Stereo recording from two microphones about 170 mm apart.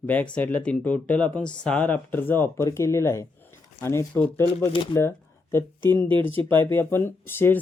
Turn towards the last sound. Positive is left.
turn(degrees=15)  # may be behind; listen again after turning